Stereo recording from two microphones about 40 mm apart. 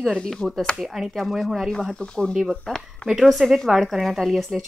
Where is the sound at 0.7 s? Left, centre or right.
Centre.